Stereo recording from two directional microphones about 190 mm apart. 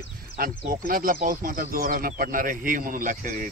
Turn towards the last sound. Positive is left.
turn(degrees=-45)  # may be behind; listen again after turning